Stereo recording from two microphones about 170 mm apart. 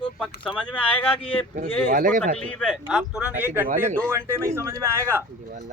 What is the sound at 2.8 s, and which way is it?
A man's voice, 5° right (ahead or behind).